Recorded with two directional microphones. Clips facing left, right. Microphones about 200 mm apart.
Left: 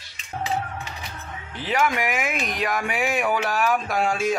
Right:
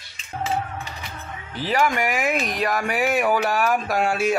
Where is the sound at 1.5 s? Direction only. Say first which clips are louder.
Right 2 dB; centre (ahead or behind).